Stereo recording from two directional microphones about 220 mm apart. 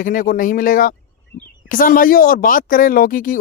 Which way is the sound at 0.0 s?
40° left (ahead or behind).